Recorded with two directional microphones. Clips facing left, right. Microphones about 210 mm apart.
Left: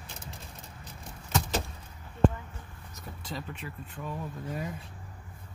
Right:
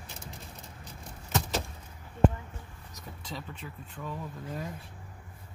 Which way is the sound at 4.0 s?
5° left (ahead or behind).